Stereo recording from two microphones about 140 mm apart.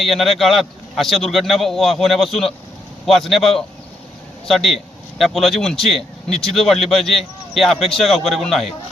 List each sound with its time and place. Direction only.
0.0 s a man's voice: centre (ahead or behind)